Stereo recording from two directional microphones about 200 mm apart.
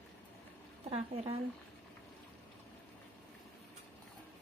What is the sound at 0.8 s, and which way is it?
Speech, 30° right (ahead or behind).